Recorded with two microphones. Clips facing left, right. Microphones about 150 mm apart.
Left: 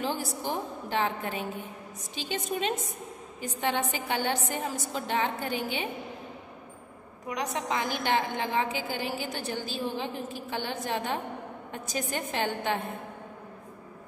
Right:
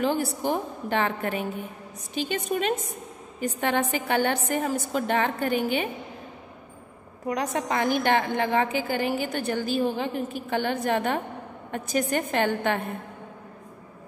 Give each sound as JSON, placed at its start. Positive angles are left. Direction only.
{"t": 0.0, "sound": "a woman's voice", "side_deg": -60}
{"t": 7.2, "sound": "a woman's voice", "side_deg": -50}